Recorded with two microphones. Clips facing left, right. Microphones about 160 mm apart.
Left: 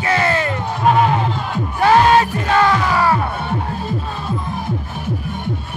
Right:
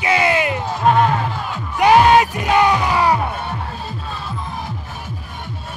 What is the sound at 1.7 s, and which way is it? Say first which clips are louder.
Music: right 1 dB; 15° right (ahead or behind).